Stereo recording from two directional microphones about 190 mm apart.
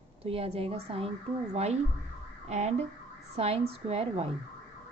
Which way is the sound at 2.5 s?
35° right (ahead or behind).